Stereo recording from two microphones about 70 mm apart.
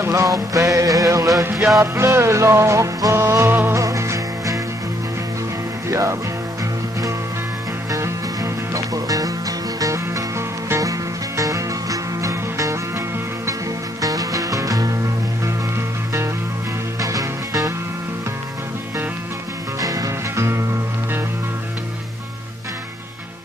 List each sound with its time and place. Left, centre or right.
0.1 s music: right
1.8 s music: right
3.4 s music: right
3.7 s music: right
5.9 s music: right
7.9 s music: right
14.0 s music: right
17.0 s music: right
19.8 s music: right